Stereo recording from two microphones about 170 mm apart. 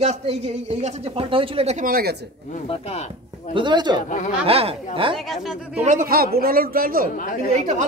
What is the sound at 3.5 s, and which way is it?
A man's voice, 25° right (ahead or behind).